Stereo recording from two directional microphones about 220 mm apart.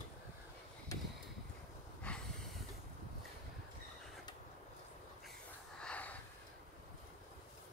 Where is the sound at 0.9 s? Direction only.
15° left (ahead or behind).